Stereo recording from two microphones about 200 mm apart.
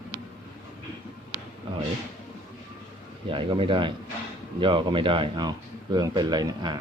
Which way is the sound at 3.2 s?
25° right (ahead or behind).